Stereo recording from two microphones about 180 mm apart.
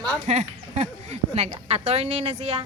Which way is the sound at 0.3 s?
40° right (ahead or behind).